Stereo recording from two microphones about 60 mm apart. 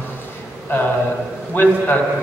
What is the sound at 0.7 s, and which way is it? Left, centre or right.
Speech, left.